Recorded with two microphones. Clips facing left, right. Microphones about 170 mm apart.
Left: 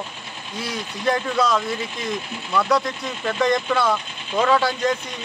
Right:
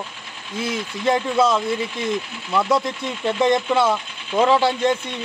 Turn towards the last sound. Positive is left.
turn(degrees=-25)  # may be behind; listen again after turning